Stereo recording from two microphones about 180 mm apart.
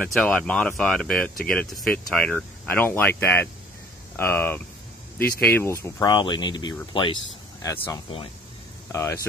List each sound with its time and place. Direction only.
0.0 s speech: 5° left (ahead or behind)
5.9 s speech: 25° left (ahead or behind)